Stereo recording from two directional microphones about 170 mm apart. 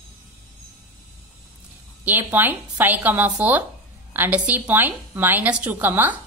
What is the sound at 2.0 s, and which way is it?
A woman's voice, 10° right (ahead or behind).